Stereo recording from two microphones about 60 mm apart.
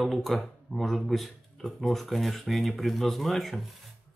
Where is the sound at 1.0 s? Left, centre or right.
Centre.